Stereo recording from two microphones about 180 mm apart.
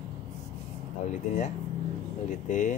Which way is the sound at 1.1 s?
45° left (ahead or behind).